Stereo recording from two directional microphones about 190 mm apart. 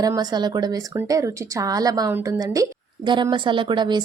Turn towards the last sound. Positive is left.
turn(degrees=-25)  # may be behind; listen again after turning